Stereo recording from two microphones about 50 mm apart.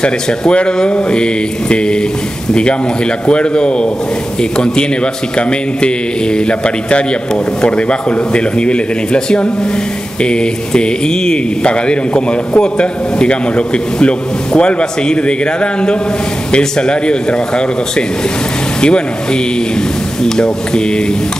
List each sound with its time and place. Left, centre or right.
0.0 s speech: centre
3.3 s speech: centre